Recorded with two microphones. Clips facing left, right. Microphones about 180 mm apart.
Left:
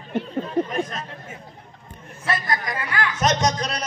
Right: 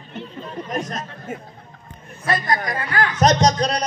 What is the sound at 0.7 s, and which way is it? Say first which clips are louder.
Speech: even; 40° right (ahead or behind).